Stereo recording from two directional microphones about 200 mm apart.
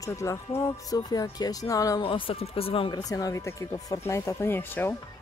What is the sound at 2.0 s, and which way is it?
Speech, 25° left (ahead or behind).